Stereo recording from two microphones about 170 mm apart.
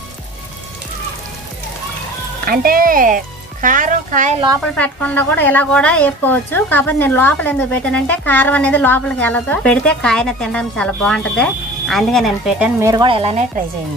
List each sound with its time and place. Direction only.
2.4 s speech: 60° right (ahead or behind)
4.7 s a woman's voice: 10° left (ahead or behind); by 12.9 s 10° right (ahead or behind)
12.9 s speech: 30° right (ahead or behind)